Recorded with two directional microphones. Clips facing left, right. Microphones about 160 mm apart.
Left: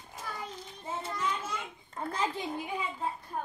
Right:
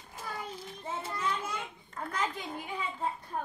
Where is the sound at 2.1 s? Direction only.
30° left (ahead or behind).